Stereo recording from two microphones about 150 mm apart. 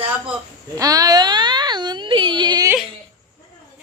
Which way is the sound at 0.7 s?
25° right (ahead or behind).